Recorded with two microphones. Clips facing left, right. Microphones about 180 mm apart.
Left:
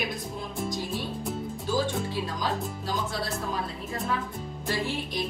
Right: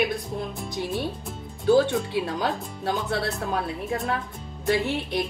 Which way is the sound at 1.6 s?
65° right (ahead or behind).